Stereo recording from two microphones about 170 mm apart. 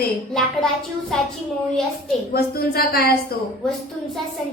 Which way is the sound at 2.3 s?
65° left (ahead or behind).